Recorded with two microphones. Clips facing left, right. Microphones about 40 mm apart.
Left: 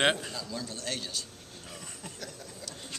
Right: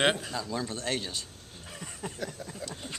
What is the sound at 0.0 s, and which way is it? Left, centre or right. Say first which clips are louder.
Speech: even; centre.